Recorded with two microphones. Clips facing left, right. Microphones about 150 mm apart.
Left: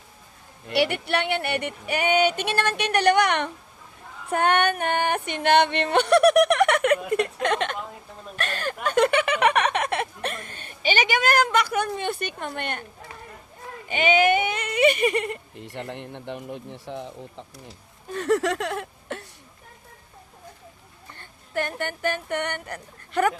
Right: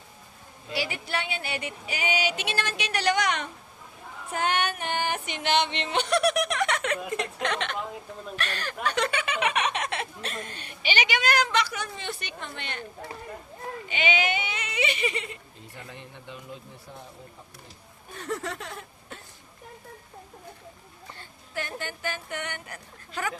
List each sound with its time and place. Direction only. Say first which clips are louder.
0.7 s speech: left 8 dB; 70° left (ahead or behind)
13.8 s speech: left 8 dB; 50° left (ahead or behind); by 19.2 s 80° left
21.2 s a woman's voice: left 8 dB; 55° left (ahead or behind)